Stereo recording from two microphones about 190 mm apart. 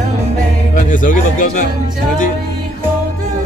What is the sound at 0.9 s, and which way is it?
Speech, 45° left (ahead or behind).